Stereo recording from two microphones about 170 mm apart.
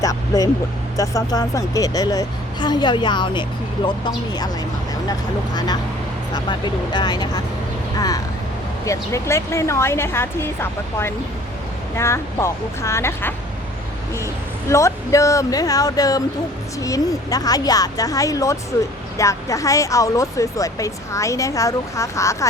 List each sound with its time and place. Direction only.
0.0 s speech: 20° left (ahead or behind)
5.5 s speech: 25° left (ahead or behind)
14.7 s speech: 15° left (ahead or behind)